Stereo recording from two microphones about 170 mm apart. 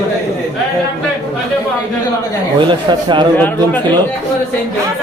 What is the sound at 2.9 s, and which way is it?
Speech, 25° right (ahead or behind).